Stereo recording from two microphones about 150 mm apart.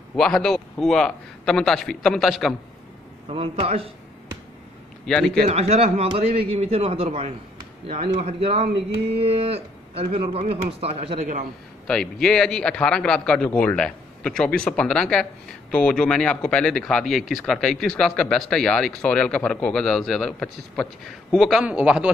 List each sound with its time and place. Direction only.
0.1 s a man's voice: 5° left (ahead or behind)
3.3 s a man's voice: 40° right (ahead or behind)
5.0 s a man's voice: 5° left (ahead or behind)
5.5 s a man's voice: 45° right (ahead or behind)
11.9 s a man's voice: 5° left (ahead or behind)